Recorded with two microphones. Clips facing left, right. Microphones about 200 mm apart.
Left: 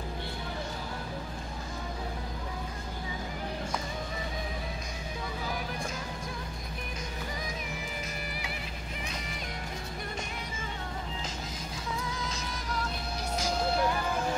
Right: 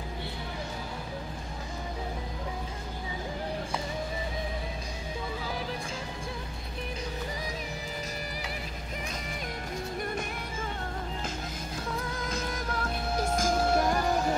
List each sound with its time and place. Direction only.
12.0 s music: 55° right (ahead or behind)